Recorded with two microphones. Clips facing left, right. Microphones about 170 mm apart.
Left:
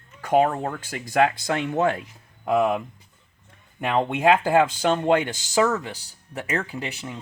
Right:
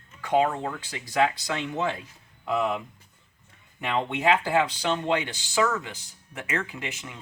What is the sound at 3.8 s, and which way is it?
Speech, 45° left (ahead or behind).